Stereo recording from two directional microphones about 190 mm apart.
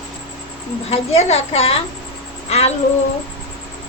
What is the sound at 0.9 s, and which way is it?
A woman's voice, 30° left (ahead or behind).